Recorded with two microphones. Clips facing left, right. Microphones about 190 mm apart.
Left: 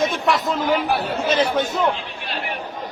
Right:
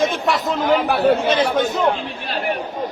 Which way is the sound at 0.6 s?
50° right (ahead or behind).